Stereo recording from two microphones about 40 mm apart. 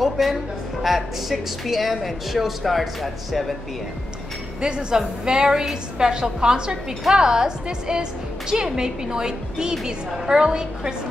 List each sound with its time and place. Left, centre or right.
0.0 s music: centre
0.8 s speech: centre
4.6 s a woman's voice: right